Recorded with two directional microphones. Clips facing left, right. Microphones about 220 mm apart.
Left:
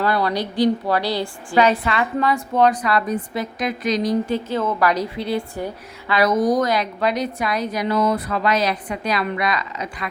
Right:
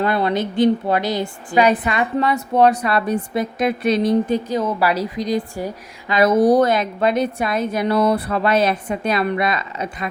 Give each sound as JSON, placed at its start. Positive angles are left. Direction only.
{"t": 0.0, "sound": "a woman's voice", "side_deg": -20}
{"t": 4.0, "sound": "a woman's voice", "side_deg": -15}
{"t": 6.1, "sound": "a woman's voice", "side_deg": -30}
{"t": 8.0, "sound": "a sound", "side_deg": -30}
{"t": 8.6, "sound": "a woman's voice", "side_deg": -25}